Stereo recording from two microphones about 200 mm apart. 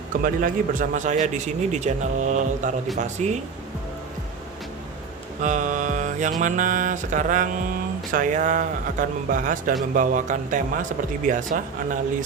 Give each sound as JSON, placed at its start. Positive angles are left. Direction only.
{"t": 0.1, "sound": "speech", "side_deg": -45}
{"t": 5.4, "sound": "speech", "side_deg": -40}